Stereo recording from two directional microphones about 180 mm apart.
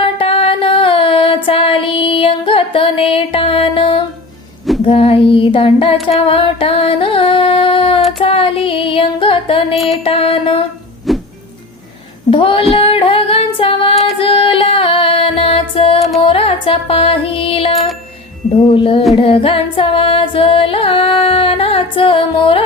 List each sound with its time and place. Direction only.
0.0 s music: 30° left (ahead or behind)
9.7 s music: centre (ahead or behind)
10.0 s music: 30° left (ahead or behind)
11.1 s music: centre (ahead or behind)
12.3 s music: 30° left (ahead or behind)
12.7 s female singing: 30° left (ahead or behind)
13.9 s a sound: centre (ahead or behind)
14.2 s music: 30° left (ahead or behind)